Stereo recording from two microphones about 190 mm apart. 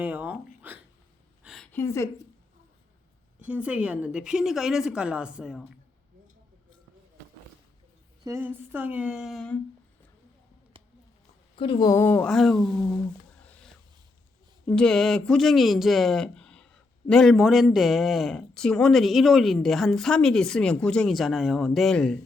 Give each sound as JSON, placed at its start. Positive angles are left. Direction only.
{"t": 0.0, "sound": "speech", "side_deg": -10}
{"t": 0.7, "sound": "hiccup", "side_deg": -10}
{"t": 1.5, "sound": "a sound", "side_deg": 0}
{"t": 3.3, "sound": "speech", "side_deg": -5}
{"t": 8.2, "sound": "speech", "side_deg": -15}
{"t": 11.5, "sound": "speech", "side_deg": 25}
{"t": 12.3, "sound": "speech", "side_deg": 0}
{"t": 12.7, "sound": "speech", "side_deg": 10}
{"t": 14.7, "sound": "speech", "side_deg": 5}